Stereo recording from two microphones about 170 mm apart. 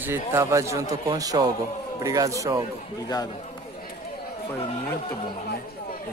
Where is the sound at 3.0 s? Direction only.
20° left (ahead or behind).